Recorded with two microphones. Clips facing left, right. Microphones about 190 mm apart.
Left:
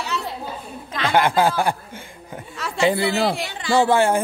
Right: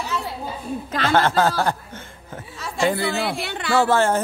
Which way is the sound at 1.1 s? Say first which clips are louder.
Left 1 dB; 15° left (ahead or behind).